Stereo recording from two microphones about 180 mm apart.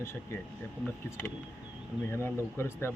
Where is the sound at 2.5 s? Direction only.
15° left (ahead or behind).